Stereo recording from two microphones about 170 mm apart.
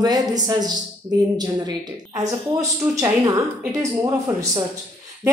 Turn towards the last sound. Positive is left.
turn(degrees=-20)  # may be behind; listen again after turning